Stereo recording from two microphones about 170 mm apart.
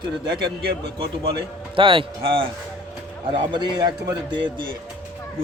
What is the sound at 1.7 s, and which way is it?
Speech, 30° right (ahead or behind).